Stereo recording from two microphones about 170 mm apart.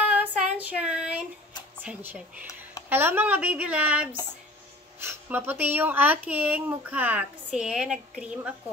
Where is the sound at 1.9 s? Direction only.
10° right (ahead or behind).